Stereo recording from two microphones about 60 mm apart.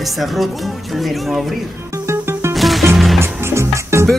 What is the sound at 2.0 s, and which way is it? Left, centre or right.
Music, right.